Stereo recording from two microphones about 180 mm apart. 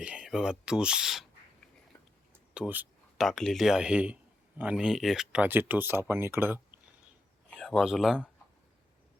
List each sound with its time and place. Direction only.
0.0 s speech: 5° right (ahead or behind)
2.6 s speech: 5° right (ahead or behind)
7.5 s speech: centre (ahead or behind)